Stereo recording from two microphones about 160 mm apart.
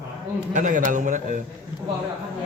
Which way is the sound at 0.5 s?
55° right (ahead or behind).